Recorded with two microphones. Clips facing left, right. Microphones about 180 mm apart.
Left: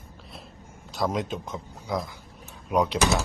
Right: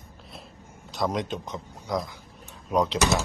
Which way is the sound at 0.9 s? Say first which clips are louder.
Even; centre (ahead or behind).